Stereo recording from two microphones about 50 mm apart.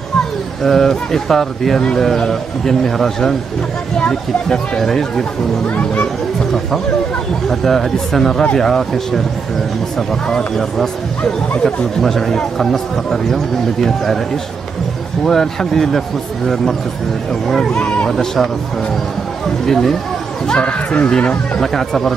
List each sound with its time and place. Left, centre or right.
0.7 s speech: centre
7.4 s speech: centre
10.2 s speech: centre
17.5 s speech: centre
17.7 s speech: left
18.1 s speech: centre
19.6 s speech: centre
20.4 s speech: left
21.5 s speech: centre